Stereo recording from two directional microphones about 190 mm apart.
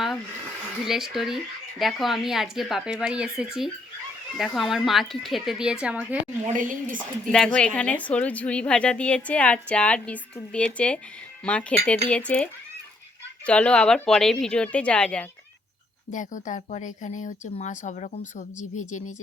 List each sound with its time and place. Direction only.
0.9 s speech: centre (ahead or behind)
6.4 s a woman's voice: 40° right (ahead or behind)
7.3 s a woman's voice: 5° left (ahead or behind)
16.1 s a woman's voice: 40° left (ahead or behind)